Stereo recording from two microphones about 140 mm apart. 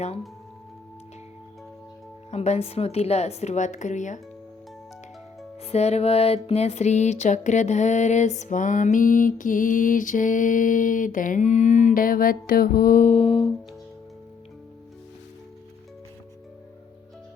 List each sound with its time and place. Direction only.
2.3 s a woman's voice: 50° left (ahead or behind)
5.6 s music: 50° left (ahead or behind)